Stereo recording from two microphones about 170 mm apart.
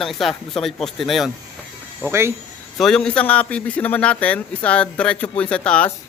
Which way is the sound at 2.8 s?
5° left (ahead or behind).